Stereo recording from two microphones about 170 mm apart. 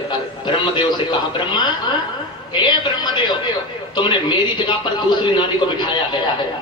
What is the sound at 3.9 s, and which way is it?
Speech, 25° left (ahead or behind).